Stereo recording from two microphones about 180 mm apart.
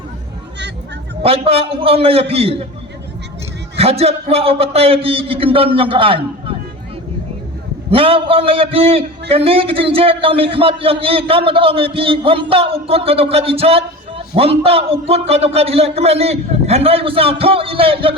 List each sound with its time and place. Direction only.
1.2 s a man's voice: 30° right (ahead or behind)
3.8 s a man's voice: 35° right (ahead or behind)
7.9 s a man's voice: 30° right (ahead or behind)